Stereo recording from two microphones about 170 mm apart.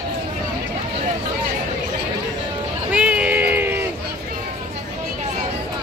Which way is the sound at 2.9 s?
10° right (ahead or behind).